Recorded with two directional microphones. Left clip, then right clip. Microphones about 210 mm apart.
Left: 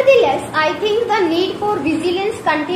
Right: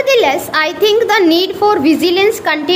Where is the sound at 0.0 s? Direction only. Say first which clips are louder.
Right 1 dB; 45° right (ahead or behind).